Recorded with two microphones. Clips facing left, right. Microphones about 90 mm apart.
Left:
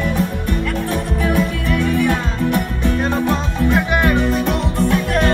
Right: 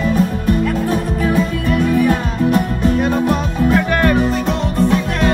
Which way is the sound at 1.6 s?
40° right (ahead or behind).